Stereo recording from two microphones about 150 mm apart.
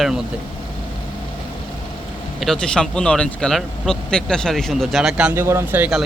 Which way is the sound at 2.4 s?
5° left (ahead or behind).